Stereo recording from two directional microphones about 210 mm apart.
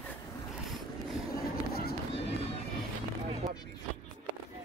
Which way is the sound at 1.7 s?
45° left (ahead or behind).